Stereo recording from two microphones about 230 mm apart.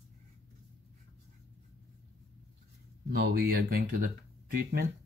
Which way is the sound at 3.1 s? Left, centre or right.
Right.